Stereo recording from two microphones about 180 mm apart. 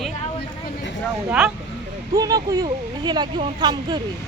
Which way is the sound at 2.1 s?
20° right (ahead or behind).